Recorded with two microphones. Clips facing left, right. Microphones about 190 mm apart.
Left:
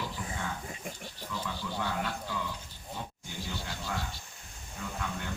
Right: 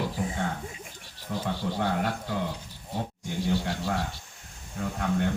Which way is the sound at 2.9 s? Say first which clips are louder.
Right 9 dB; 65° right (ahead or behind).